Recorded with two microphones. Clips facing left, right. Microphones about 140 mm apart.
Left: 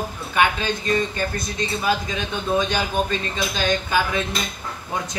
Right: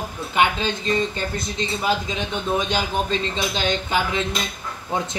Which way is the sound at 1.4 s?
20° right (ahead or behind).